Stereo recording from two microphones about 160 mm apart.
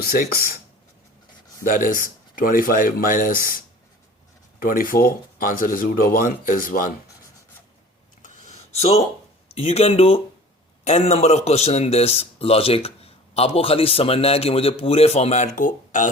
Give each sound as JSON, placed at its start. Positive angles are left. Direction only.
{"t": 0.0, "sound": "speech", "side_deg": 70}
{"t": 1.6, "sound": "speech", "side_deg": 60}
{"t": 4.6, "sound": "speech", "side_deg": 60}
{"t": 8.4, "sound": "a sound", "side_deg": 40}
{"t": 9.6, "sound": "a man's voice", "side_deg": 40}